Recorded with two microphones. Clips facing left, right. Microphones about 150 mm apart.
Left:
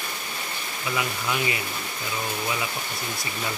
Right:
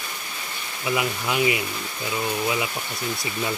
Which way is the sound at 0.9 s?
20° right (ahead or behind).